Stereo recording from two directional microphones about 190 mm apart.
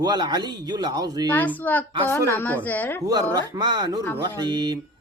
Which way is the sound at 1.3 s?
10° left (ahead or behind).